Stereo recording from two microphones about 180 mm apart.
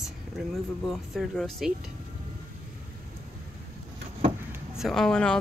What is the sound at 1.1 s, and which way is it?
Speech, centre (ahead or behind).